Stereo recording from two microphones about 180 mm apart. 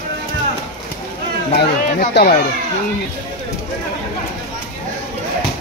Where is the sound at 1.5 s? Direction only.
65° left (ahead or behind).